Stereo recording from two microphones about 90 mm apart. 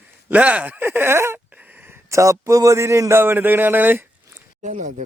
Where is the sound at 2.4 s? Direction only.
40° right (ahead or behind).